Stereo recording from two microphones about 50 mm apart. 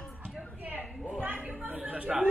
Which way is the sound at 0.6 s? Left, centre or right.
Right.